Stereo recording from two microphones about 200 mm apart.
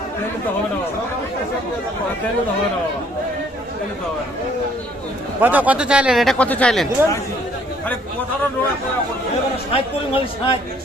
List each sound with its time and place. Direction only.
5.4 s speech: 10° right (ahead or behind)
9.7 s speech: 25° left (ahead or behind)